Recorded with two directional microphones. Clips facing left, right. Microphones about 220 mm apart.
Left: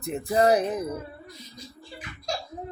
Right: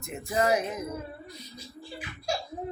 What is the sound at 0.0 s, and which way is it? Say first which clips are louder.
Speech: left 5 dB; 35° left (ahead or behind).